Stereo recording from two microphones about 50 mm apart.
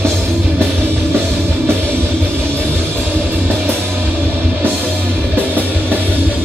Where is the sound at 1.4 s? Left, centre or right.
Right.